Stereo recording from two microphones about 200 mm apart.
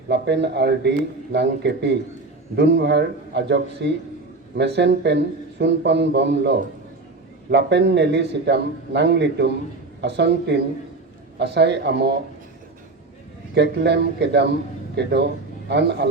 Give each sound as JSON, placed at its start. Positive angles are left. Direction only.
{"t": 0.1, "sound": "speech", "side_deg": -60}
{"t": 13.5, "sound": "speech", "side_deg": -60}